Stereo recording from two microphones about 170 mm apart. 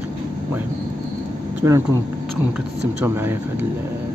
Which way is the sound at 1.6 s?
15° right (ahead or behind).